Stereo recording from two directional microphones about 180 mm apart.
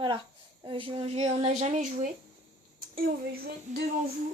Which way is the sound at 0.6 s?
30° right (ahead or behind).